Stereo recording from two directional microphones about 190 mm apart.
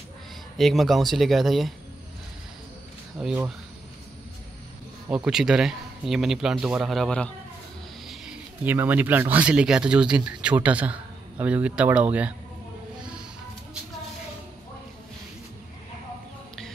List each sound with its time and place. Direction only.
0.6 s speech: centre (ahead or behind)
3.2 s speech: 5° right (ahead or behind)
5.1 s speech: 5° right (ahead or behind)